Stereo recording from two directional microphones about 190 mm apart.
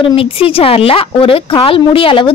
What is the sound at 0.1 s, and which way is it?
A woman's voice, 30° left (ahead or behind).